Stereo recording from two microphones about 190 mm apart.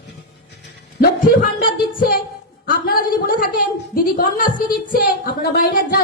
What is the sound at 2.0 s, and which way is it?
Music, 50° left (ahead or behind).